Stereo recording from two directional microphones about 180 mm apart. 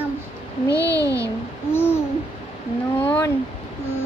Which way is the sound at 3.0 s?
10° left (ahead or behind).